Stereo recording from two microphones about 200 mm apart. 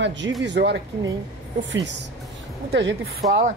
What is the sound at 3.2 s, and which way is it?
Speech, 20° right (ahead or behind).